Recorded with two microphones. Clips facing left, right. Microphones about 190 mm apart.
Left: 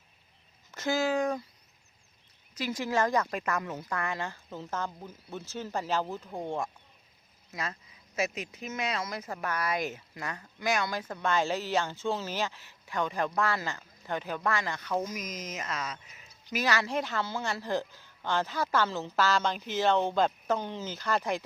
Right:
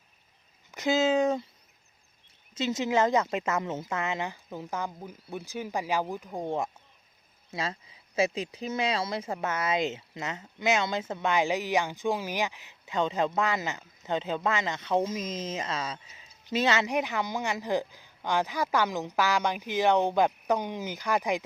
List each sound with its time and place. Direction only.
0.7 s speech: 15° right (ahead or behind)
2.6 s a woman's voice: 25° right (ahead or behind)
7.5 s speech: 30° right (ahead or behind)